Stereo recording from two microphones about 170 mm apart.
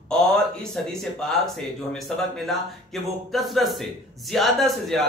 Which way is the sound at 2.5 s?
Centre (ahead or behind).